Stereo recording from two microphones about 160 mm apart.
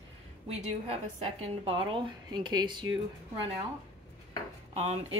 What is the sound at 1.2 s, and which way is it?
Speech, 35° right (ahead or behind).